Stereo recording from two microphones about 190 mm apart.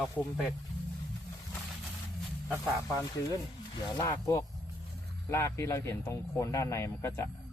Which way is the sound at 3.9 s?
15° left (ahead or behind).